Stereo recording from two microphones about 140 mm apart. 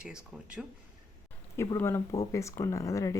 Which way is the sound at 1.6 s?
20° left (ahead or behind).